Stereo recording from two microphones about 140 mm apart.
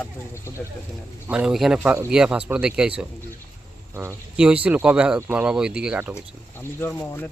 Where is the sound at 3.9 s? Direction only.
20° right (ahead or behind).